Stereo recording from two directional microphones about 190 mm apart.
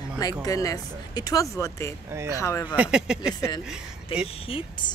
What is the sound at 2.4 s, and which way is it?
Speech, 15° left (ahead or behind).